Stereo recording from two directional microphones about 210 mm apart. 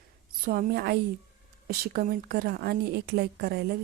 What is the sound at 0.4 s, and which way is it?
A woman's voice, 45° right (ahead or behind).